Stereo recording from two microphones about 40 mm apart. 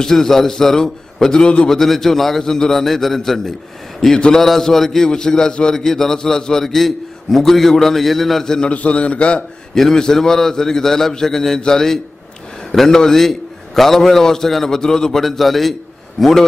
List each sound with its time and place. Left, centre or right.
0.0 s a man's voice: centre
1.7 s a man's voice: centre
8.7 s a man's voice: left
9.8 s a man's voice: centre
15.2 s a man's voice: centre